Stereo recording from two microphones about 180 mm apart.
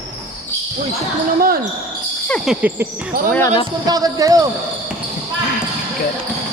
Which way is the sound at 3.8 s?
20° right (ahead or behind).